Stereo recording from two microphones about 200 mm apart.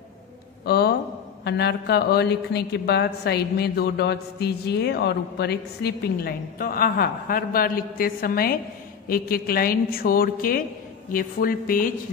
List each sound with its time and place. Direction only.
0.7 s a man's voice: 55° left (ahead or behind)